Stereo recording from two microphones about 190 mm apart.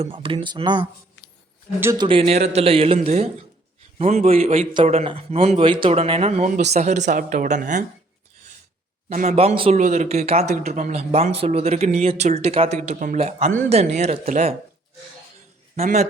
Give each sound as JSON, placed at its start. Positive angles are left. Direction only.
{"t": 0.0, "sound": "speech", "side_deg": -30}
{"t": 1.8, "sound": "speech", "side_deg": -15}
{"t": 2.0, "sound": "speech", "side_deg": -30}
{"t": 9.0, "sound": "speech", "side_deg": -40}
{"t": 15.7, "sound": "a man's voice", "side_deg": -35}